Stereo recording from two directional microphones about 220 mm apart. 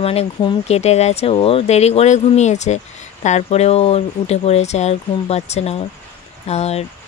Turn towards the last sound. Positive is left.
turn(degrees=30)  # may be behind; listen again after turning